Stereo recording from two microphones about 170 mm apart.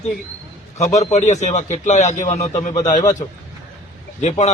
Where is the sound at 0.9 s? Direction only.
45° left (ahead or behind).